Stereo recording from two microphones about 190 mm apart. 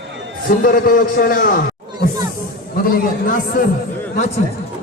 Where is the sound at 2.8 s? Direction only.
45° left (ahead or behind).